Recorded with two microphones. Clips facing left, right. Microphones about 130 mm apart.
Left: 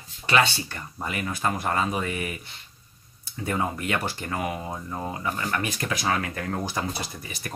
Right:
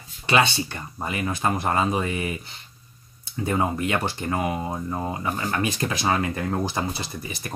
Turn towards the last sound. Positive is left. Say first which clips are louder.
# right 4 dB
turn(degrees=-25)  # may be behind; listen again after turning